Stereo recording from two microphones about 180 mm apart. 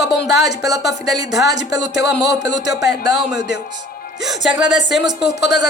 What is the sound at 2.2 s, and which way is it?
Speech, 20° right (ahead or behind).